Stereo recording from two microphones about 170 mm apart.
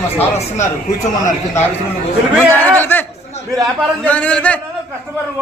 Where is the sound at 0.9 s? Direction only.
45° left (ahead or behind).